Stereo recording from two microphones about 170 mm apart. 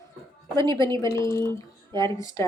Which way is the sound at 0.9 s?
15° left (ahead or behind).